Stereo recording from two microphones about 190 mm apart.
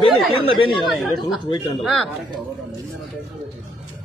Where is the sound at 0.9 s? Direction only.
Centre (ahead or behind).